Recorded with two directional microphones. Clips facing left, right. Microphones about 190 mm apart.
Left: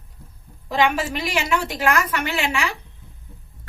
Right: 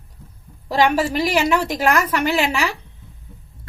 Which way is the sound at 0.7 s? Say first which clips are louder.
Right 3 dB; 40° right (ahead or behind).